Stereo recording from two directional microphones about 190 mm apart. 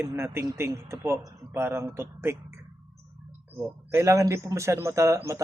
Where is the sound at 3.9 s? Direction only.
15° right (ahead or behind).